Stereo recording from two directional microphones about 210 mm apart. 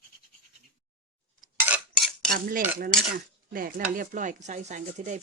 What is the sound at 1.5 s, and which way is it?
Cutlery, 10° right (ahead or behind).